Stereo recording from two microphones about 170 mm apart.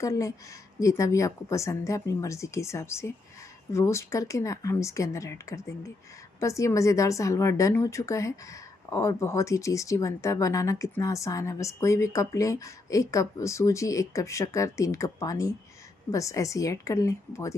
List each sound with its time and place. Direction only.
0.0 s a woman's voice: 20° left (ahead or behind)